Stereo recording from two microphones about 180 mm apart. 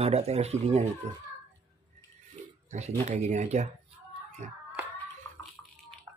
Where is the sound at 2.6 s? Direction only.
40° right (ahead or behind).